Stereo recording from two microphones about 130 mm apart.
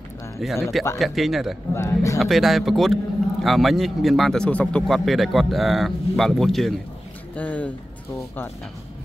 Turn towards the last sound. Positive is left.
turn(degrees=10)  # may be behind; listen again after turning